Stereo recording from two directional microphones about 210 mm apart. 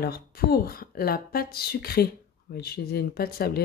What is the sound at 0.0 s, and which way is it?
Speech, 45° left (ahead or behind).